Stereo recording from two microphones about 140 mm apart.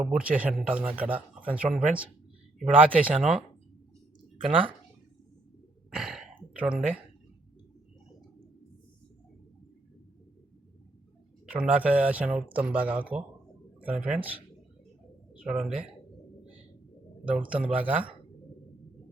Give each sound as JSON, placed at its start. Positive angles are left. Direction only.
{"t": 0.0, "sound": "speech", "side_deg": -5}
{"t": 4.4, "sound": "speech", "side_deg": -40}
{"t": 5.9, "sound": "throat clearing", "side_deg": -5}
{"t": 6.5, "sound": "speech", "side_deg": -5}
{"t": 11.4, "sound": "speech", "side_deg": -10}
{"t": 17.5, "sound": "speech", "side_deg": -10}